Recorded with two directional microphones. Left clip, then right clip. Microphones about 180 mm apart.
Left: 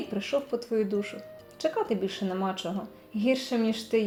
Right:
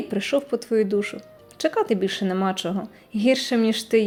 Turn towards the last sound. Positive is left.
turn(degrees=-30)  # may be behind; listen again after turning